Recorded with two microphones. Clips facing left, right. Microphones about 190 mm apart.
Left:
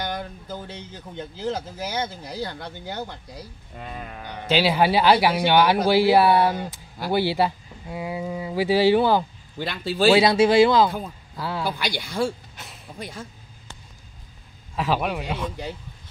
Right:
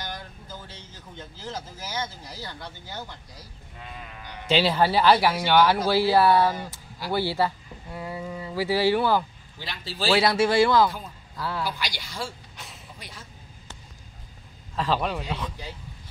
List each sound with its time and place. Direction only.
0.0 s speech: 60° left (ahead or behind)
4.5 s a man's voice: 5° left (ahead or behind)
4.7 s speech: 15° left (ahead or behind)
9.6 s speech: 55° left (ahead or behind)
10.1 s speech: 20° left (ahead or behind)
11.6 s speech: 55° left (ahead or behind)
12.5 s a sound: centre (ahead or behind)
13.0 s speech: 50° left (ahead or behind)
14.8 s speech: 10° left (ahead or behind)